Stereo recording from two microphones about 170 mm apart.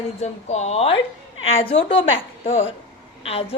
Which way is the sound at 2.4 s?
45° left (ahead or behind).